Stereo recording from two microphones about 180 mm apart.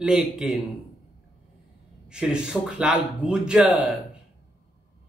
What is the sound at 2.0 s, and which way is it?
A man's voice, 5° right (ahead or behind).